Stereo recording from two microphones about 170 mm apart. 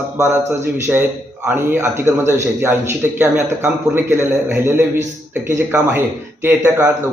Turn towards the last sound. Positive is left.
turn(degrees=-15)  # may be behind; listen again after turning